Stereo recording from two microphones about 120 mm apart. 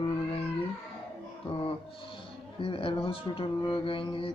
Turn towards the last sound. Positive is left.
turn(degrees=45)  # may be behind; listen again after turning